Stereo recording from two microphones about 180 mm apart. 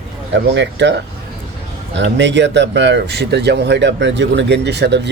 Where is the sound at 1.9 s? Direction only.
80° right.